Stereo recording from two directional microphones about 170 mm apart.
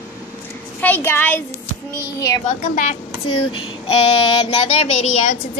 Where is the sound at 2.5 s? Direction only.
45° left (ahead or behind).